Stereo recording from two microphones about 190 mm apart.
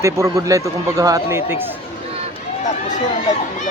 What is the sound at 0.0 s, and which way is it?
Speech, 15° right (ahead or behind).